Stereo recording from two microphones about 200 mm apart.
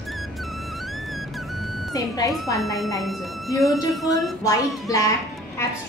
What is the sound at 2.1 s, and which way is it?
Speech, 15° left (ahead or behind).